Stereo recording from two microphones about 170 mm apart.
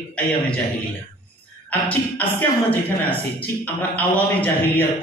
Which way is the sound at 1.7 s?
10° left (ahead or behind).